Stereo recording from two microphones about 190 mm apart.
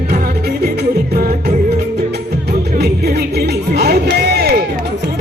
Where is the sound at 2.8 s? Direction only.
60° right (ahead or behind).